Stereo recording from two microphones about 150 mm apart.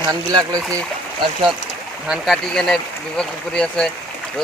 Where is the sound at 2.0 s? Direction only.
Centre (ahead or behind).